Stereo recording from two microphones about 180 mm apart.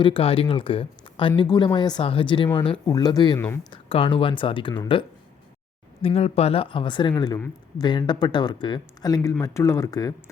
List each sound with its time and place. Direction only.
0.0 s speech: 30° left (ahead or behind); by 3.7 s 15° left (ahead or behind)
3.7 s speech: 30° left (ahead or behind)